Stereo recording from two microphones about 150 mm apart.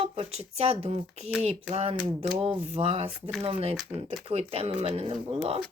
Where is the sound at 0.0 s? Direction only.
40° right (ahead or behind).